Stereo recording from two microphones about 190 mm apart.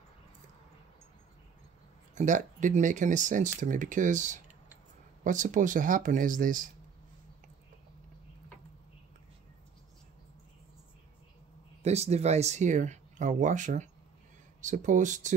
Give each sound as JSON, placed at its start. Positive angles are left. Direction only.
{"t": 2.1, "sound": "speech", "side_deg": -40}
{"t": 11.8, "sound": "speech", "side_deg": -35}